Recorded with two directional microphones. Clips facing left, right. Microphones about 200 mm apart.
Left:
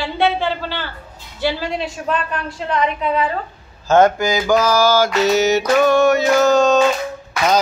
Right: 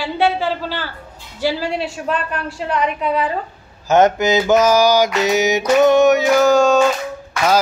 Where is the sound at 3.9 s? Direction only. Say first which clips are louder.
Even; 20° right (ahead or behind).